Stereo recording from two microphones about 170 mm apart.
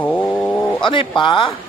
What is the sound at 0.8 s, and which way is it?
Speech, 30° left (ahead or behind).